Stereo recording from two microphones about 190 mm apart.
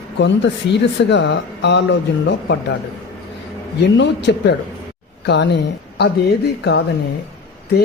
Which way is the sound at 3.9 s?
65° left (ahead or behind).